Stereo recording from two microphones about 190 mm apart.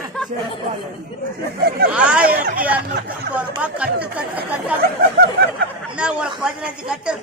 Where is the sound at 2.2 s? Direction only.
50° right (ahead or behind).